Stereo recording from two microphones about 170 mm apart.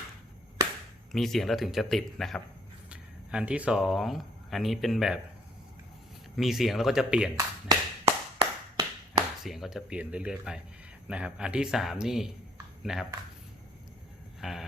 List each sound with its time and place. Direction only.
1.1 s speech: centre (ahead or behind)
6.3 s speech: centre (ahead or behind)
8.0 s tap: 25° right (ahead or behind)
9.4 s speech: centre (ahead or behind)
14.4 s a sound: centre (ahead or behind)